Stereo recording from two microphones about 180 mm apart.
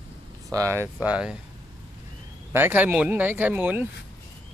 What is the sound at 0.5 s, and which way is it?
Speech, 15° right (ahead or behind).